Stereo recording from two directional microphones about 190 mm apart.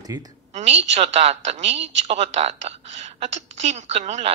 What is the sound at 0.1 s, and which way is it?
Speech, 20° right (ahead or behind).